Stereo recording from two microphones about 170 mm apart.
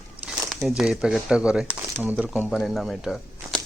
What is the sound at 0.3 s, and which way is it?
Speech, centre (ahead or behind).